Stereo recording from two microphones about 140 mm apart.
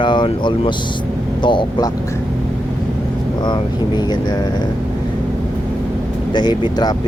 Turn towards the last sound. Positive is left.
turn(degrees=30)  # may be behind; listen again after turning